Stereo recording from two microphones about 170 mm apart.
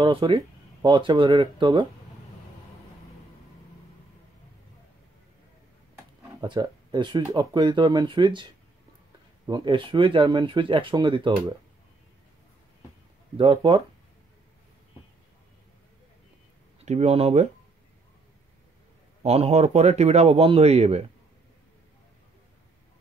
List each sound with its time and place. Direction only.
0.0 s speech: 30° right (ahead or behind)
6.4 s speech: 25° right (ahead or behind)
9.5 s speech: 30° right (ahead or behind)
13.4 s speech: 30° right (ahead or behind)
16.8 s speech: 40° right (ahead or behind)
19.2 s speech: 40° right (ahead or behind)